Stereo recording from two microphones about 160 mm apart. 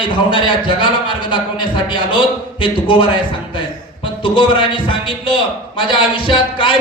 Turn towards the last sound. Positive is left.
turn(degrees=30)  # may be behind; listen again after turning